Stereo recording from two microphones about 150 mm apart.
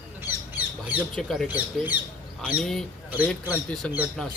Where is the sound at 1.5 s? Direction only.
10° right (ahead or behind).